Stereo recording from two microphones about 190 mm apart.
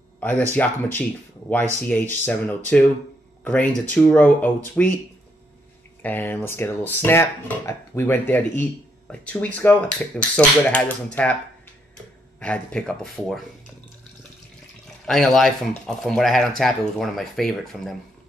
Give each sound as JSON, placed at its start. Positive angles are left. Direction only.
{"t": 0.2, "sound": "speech", "side_deg": 10}
{"t": 6.0, "sound": "speech", "side_deg": 10}
{"t": 12.4, "sound": "speech", "side_deg": 5}
{"t": 15.0, "sound": "speech", "side_deg": 0}